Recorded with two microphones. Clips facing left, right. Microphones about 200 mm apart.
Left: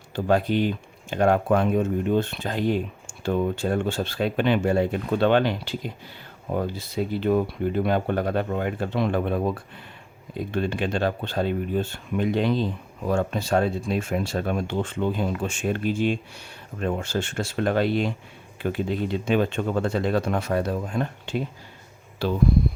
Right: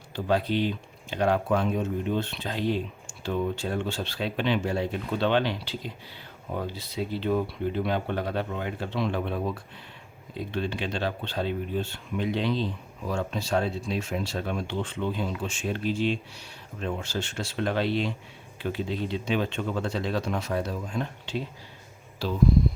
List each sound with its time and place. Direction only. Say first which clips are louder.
0.3 s speech: left 4 dB; 50° left (ahead or behind)